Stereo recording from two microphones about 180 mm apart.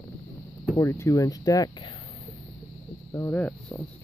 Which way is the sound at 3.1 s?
10° left (ahead or behind).